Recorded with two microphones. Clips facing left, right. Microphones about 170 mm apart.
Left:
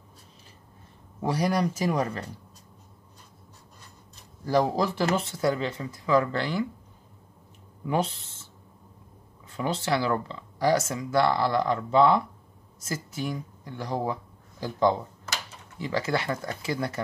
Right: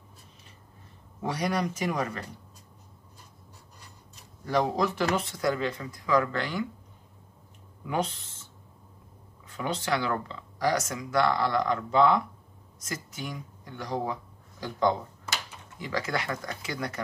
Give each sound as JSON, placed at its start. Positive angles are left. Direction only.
{"t": 1.2, "sound": "speech", "side_deg": 35}
{"t": 4.1, "sound": "speech", "side_deg": 30}
{"t": 7.8, "sound": "speech", "side_deg": 30}
{"t": 9.6, "sound": "speech", "side_deg": 30}